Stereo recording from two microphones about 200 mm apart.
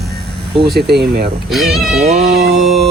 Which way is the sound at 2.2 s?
50° right (ahead or behind).